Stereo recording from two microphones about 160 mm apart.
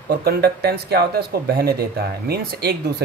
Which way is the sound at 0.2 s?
80° right.